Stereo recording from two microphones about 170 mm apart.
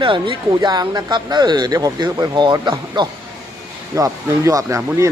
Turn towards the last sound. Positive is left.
turn(degrees=-15)  # may be behind; listen again after turning